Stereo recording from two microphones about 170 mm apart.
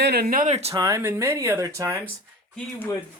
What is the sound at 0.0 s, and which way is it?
Speech, 70° right (ahead or behind).